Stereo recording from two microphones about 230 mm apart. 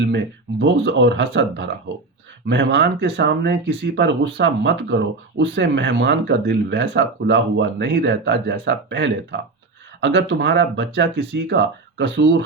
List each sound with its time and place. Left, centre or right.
0.6 s speech: right